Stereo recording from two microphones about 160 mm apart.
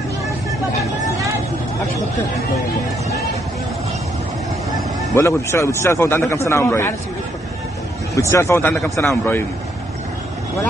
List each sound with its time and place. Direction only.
5.1 s a man's voice: 20° left (ahead or behind)
8.1 s a man's voice: 20° left (ahead or behind)